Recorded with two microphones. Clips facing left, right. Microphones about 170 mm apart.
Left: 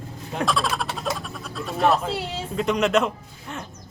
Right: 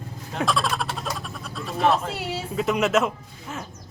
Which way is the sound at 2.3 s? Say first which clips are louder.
Right 2 dB; 5° right (ahead or behind).